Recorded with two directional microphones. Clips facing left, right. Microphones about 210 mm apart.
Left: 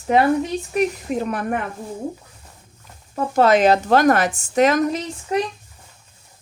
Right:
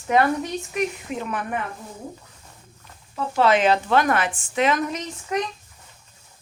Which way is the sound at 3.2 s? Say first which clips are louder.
Left 4 dB; 45° left (ahead or behind).